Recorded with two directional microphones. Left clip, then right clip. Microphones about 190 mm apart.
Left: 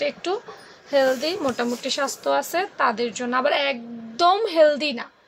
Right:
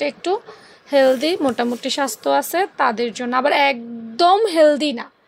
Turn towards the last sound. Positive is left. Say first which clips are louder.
# right 3 dB
turn(degrees=-30)  # may be behind; listen again after turning